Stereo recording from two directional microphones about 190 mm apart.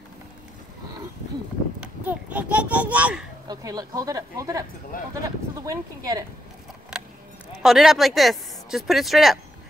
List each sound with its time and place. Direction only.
1.8 s a child's voice: 10° right (ahead or behind)
3.4 s speech: 20° right (ahead or behind)
4.9 s speech: 50° left (ahead or behind)
5.6 s speech: 15° right (ahead or behind)
6.9 s music: 5° right (ahead or behind)
7.6 s speech: centre (ahead or behind)